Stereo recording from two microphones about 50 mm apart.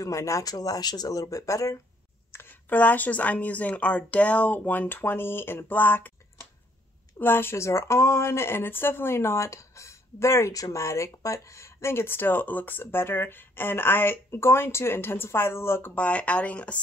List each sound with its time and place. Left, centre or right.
0.1 s speech: left
2.5 s a woman's voice: left
5.7 s a woman's voice: left
7.2 s speech: left
7.5 s speech: left
15.9 s speech: left